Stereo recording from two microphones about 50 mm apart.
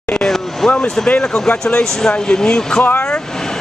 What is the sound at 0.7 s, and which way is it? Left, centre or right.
Speech, centre.